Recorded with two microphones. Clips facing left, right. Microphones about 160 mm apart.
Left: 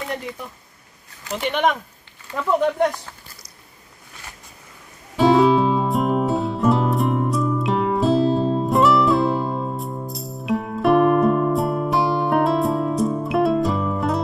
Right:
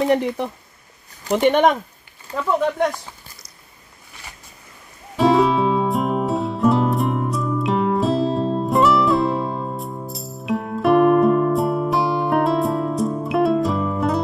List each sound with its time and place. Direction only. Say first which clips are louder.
0.1 s speech: right 11 dB; 70° right (ahead or behind)
1.3 s speech: right 6 dB; 50° right (ahead or behind)
5.1 s music: left 1 dB; centre (ahead or behind)